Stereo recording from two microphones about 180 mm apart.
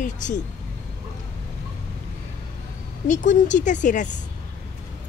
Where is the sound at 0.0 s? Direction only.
45° left (ahead or behind).